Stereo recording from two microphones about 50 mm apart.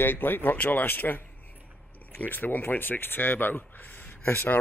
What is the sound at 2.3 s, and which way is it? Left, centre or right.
Speech, left.